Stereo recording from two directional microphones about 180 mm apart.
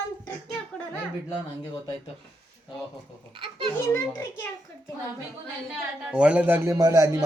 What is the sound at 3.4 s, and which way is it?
Speech, 30° right (ahead or behind).